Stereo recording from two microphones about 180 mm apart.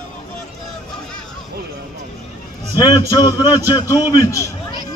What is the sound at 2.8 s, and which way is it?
A man's voice, 20° left (ahead or behind).